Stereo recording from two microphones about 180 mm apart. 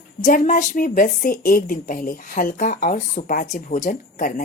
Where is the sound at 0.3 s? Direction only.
45° left (ahead or behind).